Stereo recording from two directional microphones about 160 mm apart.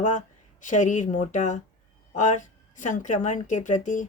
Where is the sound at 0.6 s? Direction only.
50° left (ahead or behind).